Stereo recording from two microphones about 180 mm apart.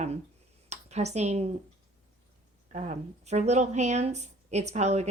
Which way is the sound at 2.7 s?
40° right (ahead or behind).